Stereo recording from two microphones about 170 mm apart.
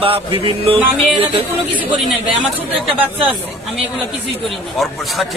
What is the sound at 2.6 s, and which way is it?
Speech, 10° right (ahead or behind).